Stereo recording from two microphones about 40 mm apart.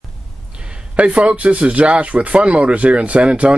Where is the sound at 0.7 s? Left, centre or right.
Right.